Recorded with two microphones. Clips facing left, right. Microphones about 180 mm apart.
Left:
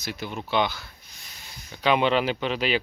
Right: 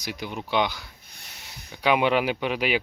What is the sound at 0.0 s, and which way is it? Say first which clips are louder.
Speech: even; 15° right (ahead or behind).